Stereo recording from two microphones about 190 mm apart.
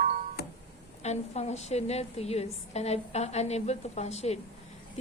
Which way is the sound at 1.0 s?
35° left (ahead or behind).